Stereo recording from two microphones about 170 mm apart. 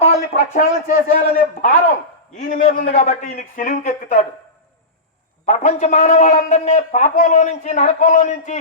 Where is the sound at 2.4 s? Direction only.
50° left (ahead or behind).